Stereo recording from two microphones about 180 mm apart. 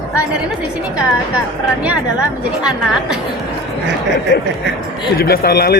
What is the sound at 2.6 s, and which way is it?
Speech, 5° right (ahead or behind).